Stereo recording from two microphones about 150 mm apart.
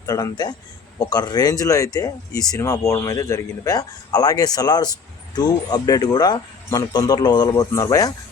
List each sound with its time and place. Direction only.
0.0 s speech: 25° left (ahead or behind)